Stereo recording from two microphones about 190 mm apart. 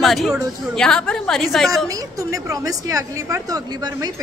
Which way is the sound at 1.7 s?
15° right (ahead or behind).